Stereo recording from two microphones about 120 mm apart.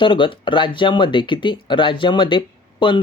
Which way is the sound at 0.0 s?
45° left (ahead or behind).